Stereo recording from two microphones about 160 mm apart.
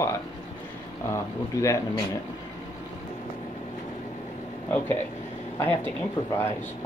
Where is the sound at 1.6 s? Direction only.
20° left (ahead or behind).